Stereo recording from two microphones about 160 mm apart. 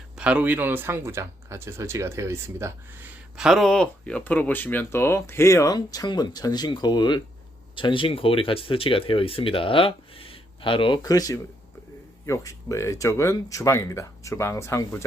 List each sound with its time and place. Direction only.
0.2 s speech: 10° right (ahead or behind)
3.3 s speech: centre (ahead or behind); by 15.0 s 15° left (ahead or behind)